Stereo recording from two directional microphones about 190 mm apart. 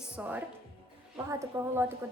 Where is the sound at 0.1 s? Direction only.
10° right (ahead or behind).